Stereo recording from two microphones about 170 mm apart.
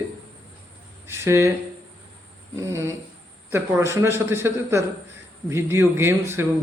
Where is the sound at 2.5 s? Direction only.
20° right (ahead or behind).